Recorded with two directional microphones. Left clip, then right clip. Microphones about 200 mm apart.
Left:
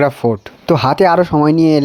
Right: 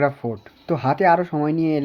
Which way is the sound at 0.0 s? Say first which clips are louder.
Left 8 dB; 45° left (ahead or behind).